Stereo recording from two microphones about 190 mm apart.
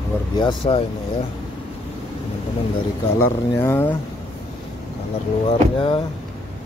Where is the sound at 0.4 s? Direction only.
25° left (ahead or behind).